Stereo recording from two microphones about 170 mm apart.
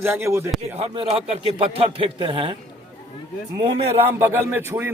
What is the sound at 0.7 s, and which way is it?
Speech, 35° right (ahead or behind).